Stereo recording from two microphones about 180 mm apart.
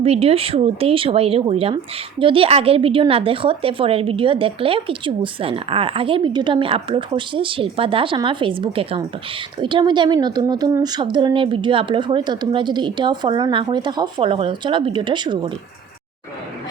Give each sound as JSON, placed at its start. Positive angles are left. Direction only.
{"t": 0.0, "sound": "a woman's voice", "side_deg": -35}